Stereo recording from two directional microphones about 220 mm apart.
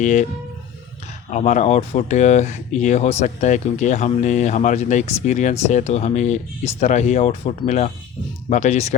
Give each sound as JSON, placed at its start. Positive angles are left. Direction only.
{"t": 0.0, "sound": "speech", "side_deg": 35}
{"t": 1.3, "sound": "speech", "side_deg": 35}